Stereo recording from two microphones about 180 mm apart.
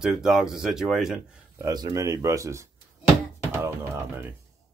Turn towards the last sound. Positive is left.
turn(degrees=-15)  # may be behind; listen again after turning